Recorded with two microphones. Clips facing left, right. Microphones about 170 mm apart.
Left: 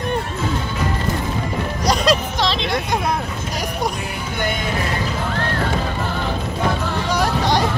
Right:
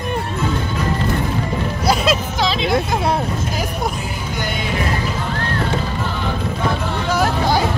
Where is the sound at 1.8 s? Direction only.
5° right (ahead or behind).